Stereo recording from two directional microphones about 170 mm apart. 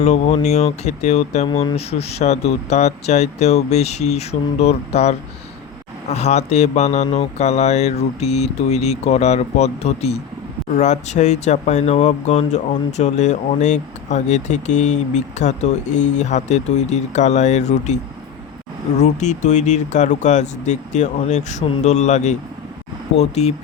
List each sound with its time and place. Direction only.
0.0 s speech: 40° left (ahead or behind)